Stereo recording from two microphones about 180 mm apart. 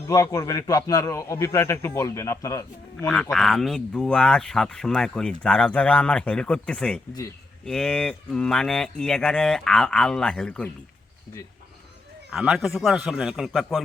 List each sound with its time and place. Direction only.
0.1 s a man's voice: 15° left (ahead or behind)
3.1 s speech: 5° left (ahead or behind)
12.3 s speech: centre (ahead or behind)